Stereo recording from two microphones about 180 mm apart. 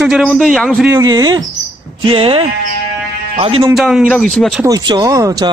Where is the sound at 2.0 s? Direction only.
30° right (ahead or behind).